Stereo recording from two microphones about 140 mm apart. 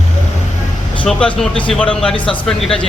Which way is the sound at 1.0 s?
5° left (ahead or behind).